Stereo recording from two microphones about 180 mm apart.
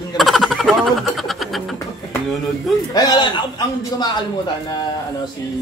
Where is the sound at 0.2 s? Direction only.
Centre (ahead or behind).